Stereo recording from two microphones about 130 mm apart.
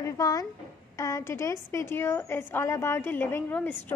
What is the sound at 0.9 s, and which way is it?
A woman's voice, 25° left (ahead or behind).